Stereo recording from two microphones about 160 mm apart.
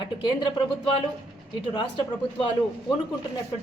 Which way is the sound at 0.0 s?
30° left (ahead or behind).